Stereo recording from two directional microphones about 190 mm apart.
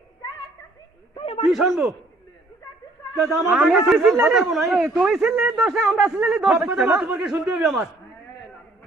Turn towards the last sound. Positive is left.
turn(degrees=-5)  # may be behind; listen again after turning